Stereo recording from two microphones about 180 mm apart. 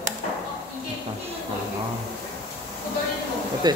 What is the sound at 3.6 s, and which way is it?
Speech, 20° right (ahead or behind).